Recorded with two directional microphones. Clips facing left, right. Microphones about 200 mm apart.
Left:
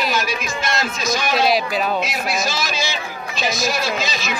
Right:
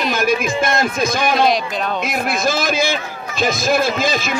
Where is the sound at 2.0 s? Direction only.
55° right (ahead or behind).